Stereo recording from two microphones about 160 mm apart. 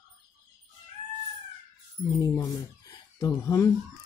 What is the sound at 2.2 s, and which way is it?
Speech, 20° left (ahead or behind).